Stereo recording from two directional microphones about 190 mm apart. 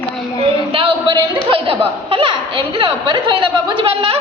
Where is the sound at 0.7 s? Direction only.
25° right (ahead or behind).